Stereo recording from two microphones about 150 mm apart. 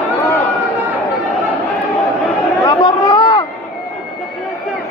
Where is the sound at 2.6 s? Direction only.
25° left (ahead or behind).